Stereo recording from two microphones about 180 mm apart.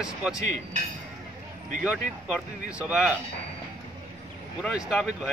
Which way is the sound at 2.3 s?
5° right (ahead or behind).